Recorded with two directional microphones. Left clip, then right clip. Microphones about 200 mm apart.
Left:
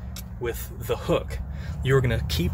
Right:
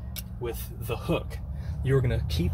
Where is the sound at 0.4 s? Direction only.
5° left (ahead or behind).